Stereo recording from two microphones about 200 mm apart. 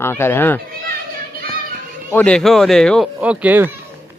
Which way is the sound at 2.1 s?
5° left (ahead or behind).